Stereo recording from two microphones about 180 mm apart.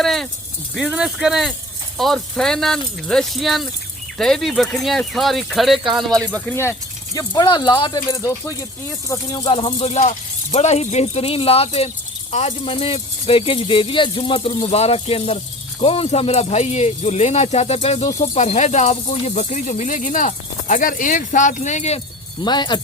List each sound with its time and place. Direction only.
0.0 s a sound: centre (ahead or behind)
0.8 s speech: 5° right (ahead or behind); by 9.9 s 30° left (ahead or behind)
9.9 s speech: 40° left (ahead or behind)